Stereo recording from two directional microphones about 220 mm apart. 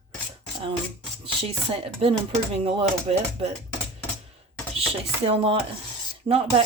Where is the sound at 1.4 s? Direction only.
25° right (ahead or behind).